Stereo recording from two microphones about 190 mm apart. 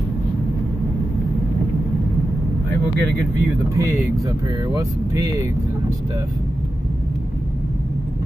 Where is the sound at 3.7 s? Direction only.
15° right (ahead or behind).